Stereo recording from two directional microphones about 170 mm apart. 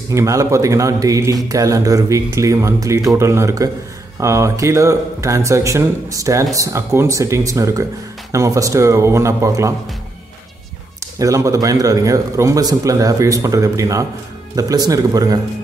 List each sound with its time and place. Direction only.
0.1 s a man's voice: 20° right (ahead or behind)
11.1 s a man's voice: 20° right (ahead or behind)